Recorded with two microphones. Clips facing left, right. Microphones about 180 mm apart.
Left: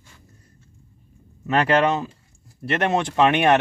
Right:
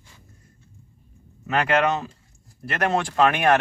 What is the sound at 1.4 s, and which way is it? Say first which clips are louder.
Speech: left 2 dB; 30° left (ahead or behind).